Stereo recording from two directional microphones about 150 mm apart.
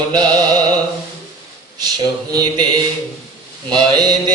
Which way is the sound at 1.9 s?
25° right (ahead or behind).